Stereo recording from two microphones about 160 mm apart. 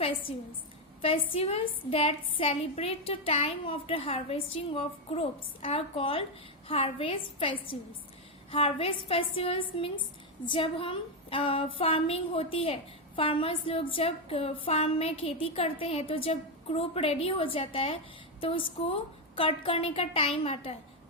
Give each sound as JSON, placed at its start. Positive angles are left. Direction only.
{"t": 0.0, "sound": "a woman's voice", "side_deg": 35}